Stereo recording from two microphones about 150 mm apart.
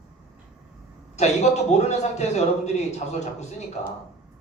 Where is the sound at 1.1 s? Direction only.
50° left (ahead or behind).